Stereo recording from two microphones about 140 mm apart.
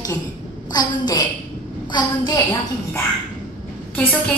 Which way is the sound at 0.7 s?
30° left (ahead or behind).